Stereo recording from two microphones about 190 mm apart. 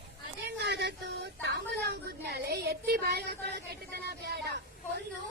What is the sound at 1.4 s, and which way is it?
Speech, 60° right (ahead or behind).